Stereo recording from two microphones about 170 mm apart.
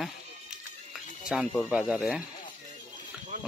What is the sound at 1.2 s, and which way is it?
Speech, 5° right (ahead or behind).